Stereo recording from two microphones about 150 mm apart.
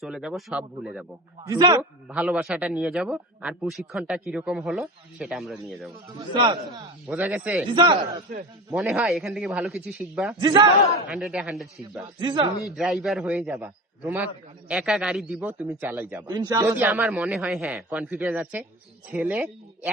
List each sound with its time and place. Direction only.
0.0 s a man's voice: 5° right (ahead or behind)
1.5 s a man's voice: 30° right (ahead or behind)
1.8 s a man's voice: 5° right (ahead or behind)
6.1 s a man's voice: 30° right (ahead or behind)
7.1 s a man's voice: 10° right (ahead or behind)
8.3 s a man's voice: 55° right (ahead or behind)
8.7 s a man's voice: 5° right (ahead or behind)
10.3 s a man's voice: 30° right (ahead or behind)
11.1 s a man's voice: centre (ahead or behind)
12.2 s a man's voice: 30° right (ahead or behind)
12.6 s a man's voice: centre (ahead or behind)
14.7 s a man's voice: 5° right (ahead or behind)
16.2 s a man's voice: 30° right (ahead or behind)
16.5 s a man's voice: 15° right (ahead or behind)